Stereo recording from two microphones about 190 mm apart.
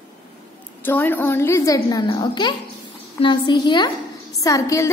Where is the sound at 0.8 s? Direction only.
10° left (ahead or behind).